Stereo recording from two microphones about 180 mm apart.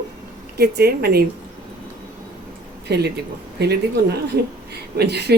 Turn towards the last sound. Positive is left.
turn(degrees=-65)  # may be behind; listen again after turning